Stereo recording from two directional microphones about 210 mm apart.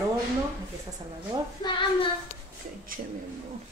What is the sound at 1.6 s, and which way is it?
Child singing, 20° left (ahead or behind).